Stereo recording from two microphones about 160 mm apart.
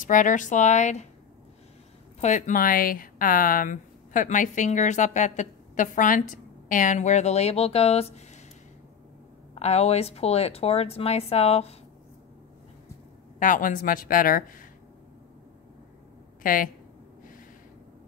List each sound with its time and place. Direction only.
0.0 s a woman's voice: 55° left (ahead or behind)
2.2 s a woman's voice: 50° left (ahead or behind)
9.6 s speech: 40° left (ahead or behind)
13.4 s speech: 55° left (ahead or behind)
16.4 s speech: 60° left (ahead or behind)